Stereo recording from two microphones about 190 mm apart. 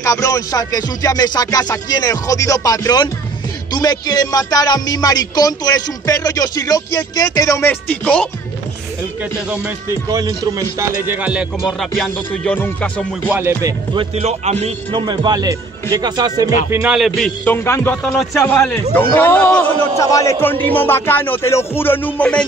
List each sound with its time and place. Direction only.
0.0 s speech: 15° left (ahead or behind)
9.5 s a man's voice: 15° right (ahead or behind); by 13.0 s 10° left (ahead or behind)
13.3 s speech: 10° right (ahead or behind)
14.1 s speech: 35° right (ahead or behind)
14.9 s speech: 20° right (ahead or behind)
16.8 s a man's voice: 5° right (ahead or behind)
17.6 s a man's voice: 10° left (ahead or behind)